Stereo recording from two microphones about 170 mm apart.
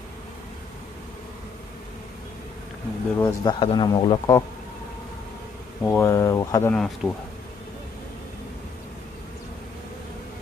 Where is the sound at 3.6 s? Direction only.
30° left (ahead or behind).